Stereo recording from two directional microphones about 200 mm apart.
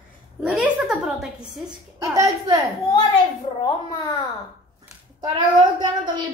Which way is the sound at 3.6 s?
20° left (ahead or behind).